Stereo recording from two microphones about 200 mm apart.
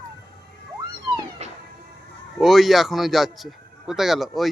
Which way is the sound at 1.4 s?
35° right (ahead or behind).